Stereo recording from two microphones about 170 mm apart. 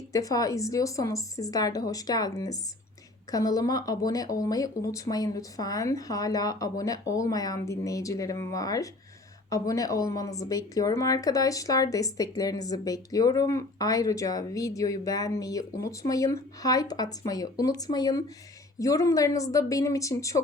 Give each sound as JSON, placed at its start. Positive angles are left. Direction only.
{"t": 0.1, "sound": "speech", "side_deg": 20}